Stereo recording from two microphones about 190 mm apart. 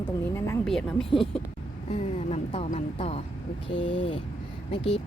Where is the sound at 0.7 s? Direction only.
Centre (ahead or behind).